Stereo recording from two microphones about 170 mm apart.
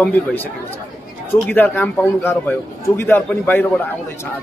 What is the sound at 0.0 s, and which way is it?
Speech, 10° left (ahead or behind).